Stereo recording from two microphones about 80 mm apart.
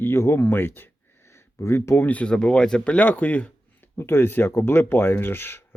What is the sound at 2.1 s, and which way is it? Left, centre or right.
Speech, centre.